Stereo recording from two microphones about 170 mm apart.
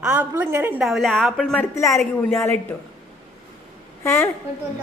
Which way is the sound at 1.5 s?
15° left (ahead or behind).